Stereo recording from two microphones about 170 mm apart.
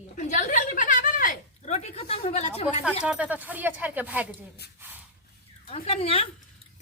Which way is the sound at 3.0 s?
10° right (ahead or behind).